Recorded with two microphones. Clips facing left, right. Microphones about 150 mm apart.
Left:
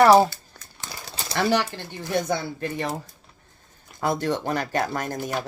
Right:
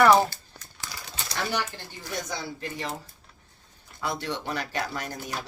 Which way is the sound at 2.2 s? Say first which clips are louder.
Left 8 dB; 55° left (ahead or behind).